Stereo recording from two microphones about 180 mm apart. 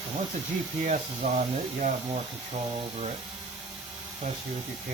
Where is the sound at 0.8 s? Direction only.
40° right (ahead or behind).